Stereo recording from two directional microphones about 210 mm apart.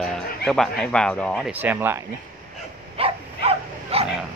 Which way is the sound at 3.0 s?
30° right (ahead or behind).